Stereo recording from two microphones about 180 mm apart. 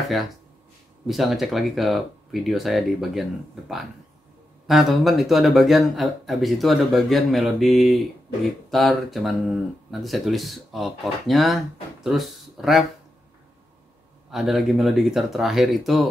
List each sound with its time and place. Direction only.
1.0 s speech: centre (ahead or behind)
14.3 s speech: centre (ahead or behind)